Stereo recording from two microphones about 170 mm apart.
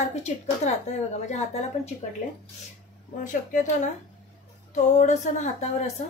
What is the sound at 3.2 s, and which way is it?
Speech, 50° left (ahead or behind).